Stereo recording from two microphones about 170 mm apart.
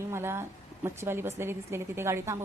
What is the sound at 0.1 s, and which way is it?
A woman's voice, 15° right (ahead or behind).